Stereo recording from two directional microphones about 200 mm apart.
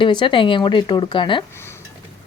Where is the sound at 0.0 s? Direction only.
25° left (ahead or behind).